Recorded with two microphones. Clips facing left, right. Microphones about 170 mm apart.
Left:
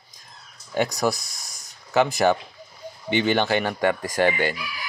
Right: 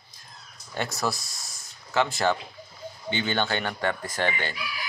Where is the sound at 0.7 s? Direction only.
15° left (ahead or behind).